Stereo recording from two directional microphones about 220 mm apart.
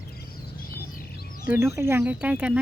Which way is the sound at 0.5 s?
40° left (ahead or behind).